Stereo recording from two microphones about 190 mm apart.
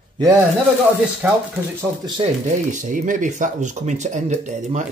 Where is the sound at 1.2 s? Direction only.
5° right (ahead or behind).